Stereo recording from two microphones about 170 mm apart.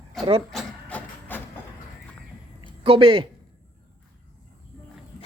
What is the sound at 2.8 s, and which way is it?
Speech, 30° right (ahead or behind).